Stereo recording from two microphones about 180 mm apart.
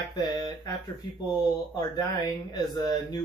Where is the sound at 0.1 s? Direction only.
25° left (ahead or behind).